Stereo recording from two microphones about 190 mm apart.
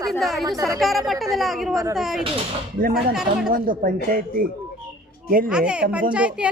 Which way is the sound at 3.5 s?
45° right (ahead or behind).